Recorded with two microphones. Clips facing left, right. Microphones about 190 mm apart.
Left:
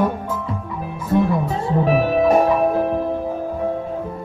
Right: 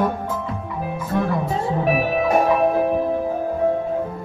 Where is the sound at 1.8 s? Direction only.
15° right (ahead or behind).